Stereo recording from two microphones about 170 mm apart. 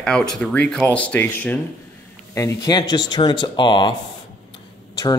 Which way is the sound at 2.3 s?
20° left (ahead or behind).